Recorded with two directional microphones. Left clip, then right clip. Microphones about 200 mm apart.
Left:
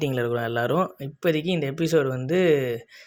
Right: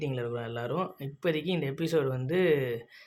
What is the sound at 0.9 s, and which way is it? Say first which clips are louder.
Speech: left 6 dB; 20° left (ahead or behind).